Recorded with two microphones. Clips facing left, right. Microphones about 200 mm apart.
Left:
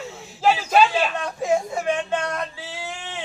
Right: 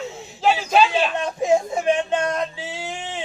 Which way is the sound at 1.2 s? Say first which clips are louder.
Right 3 dB; 20° right (ahead or behind).